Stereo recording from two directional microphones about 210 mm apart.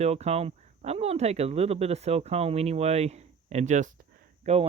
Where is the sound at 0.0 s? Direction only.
30° right (ahead or behind).